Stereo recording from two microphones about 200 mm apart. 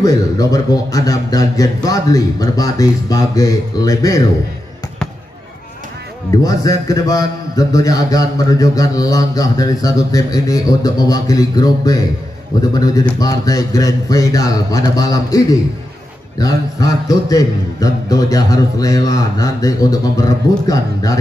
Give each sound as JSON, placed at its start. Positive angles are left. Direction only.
{"t": 0.0, "sound": "a man's voice", "side_deg": 15}
{"t": 6.3, "sound": "a man's voice", "side_deg": 15}